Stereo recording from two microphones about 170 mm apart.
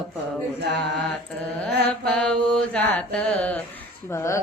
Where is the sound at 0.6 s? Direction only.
90° right.